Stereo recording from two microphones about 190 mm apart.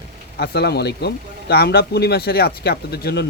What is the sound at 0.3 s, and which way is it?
Speech, 60° left (ahead or behind).